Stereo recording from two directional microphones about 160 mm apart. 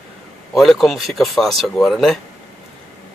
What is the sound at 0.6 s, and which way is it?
Speech, centre (ahead or behind).